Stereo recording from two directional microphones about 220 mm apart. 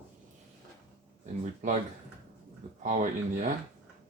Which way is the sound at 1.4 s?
35° right (ahead or behind).